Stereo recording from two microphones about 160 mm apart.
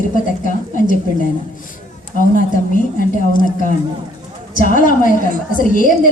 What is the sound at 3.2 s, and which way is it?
A woman's voice, 55° left (ahead or behind).